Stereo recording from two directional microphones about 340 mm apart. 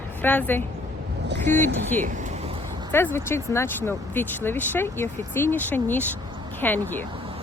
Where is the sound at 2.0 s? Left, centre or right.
Right.